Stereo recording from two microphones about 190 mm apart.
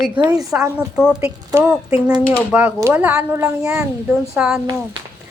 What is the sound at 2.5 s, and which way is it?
Speech, 10° right (ahead or behind).